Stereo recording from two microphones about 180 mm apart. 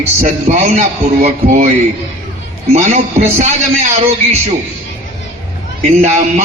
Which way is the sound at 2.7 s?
40° right (ahead or behind).